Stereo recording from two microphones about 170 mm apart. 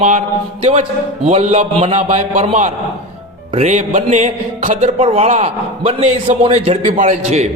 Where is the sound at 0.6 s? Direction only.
40° right (ahead or behind).